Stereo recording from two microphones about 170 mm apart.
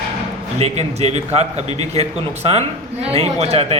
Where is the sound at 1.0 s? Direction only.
40° right (ahead or behind).